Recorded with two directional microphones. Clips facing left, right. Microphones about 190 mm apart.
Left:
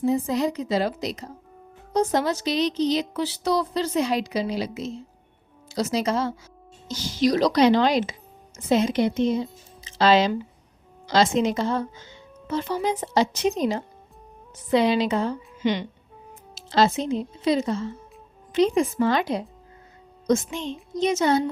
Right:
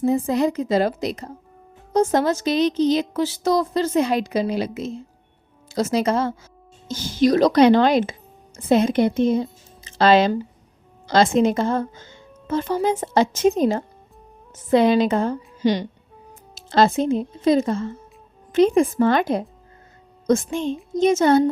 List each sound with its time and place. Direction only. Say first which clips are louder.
0.0 s a woman's voice: right 3 dB; 55° right (ahead or behind)
16.6 s a woman's voice: right 4 dB; 50° right (ahead or behind)